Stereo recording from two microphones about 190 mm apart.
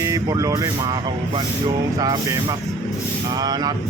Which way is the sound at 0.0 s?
15° right (ahead or behind).